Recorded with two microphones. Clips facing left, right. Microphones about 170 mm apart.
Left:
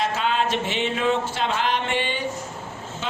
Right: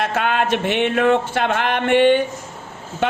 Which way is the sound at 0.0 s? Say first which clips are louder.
Right 3 dB; 60° right (ahead or behind).